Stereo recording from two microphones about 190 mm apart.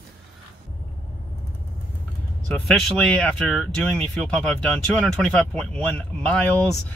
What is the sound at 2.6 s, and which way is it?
Speech, 5° left (ahead or behind).